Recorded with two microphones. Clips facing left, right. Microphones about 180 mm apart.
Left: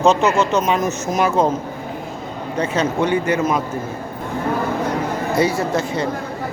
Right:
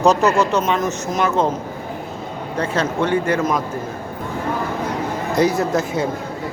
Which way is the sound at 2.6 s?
5° left (ahead or behind).